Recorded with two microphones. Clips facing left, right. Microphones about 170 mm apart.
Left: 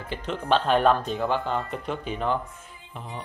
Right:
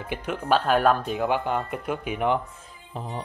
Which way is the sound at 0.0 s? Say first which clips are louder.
Right 1 dB; 15° right (ahead or behind).